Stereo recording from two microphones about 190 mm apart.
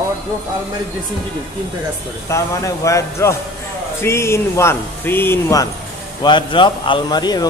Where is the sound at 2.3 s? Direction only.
15° left (ahead or behind).